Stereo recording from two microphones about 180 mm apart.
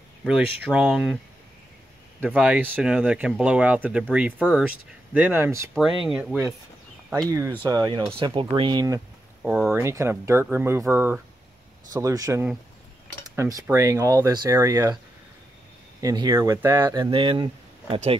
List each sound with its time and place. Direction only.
0.7 s speech: 5° right (ahead or behind)
2.2 s speech: 5° right (ahead or behind)
7.2 s speech: 15° right (ahead or behind)
9.4 s speech: 5° right (ahead or behind)
16.0 s speech: 20° right (ahead or behind)
17.1 s speech: 30° right (ahead or behind)